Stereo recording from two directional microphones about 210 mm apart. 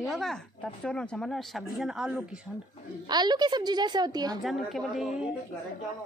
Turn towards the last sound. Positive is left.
turn(degrees=0)  # may be behind; listen again after turning